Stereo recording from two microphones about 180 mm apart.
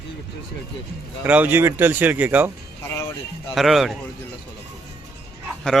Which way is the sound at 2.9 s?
15° left (ahead or behind).